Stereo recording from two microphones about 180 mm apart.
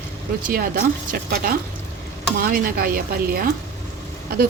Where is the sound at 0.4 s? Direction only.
55° right (ahead or behind).